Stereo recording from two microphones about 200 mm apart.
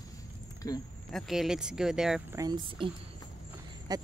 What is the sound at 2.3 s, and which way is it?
Speech, 20° right (ahead or behind).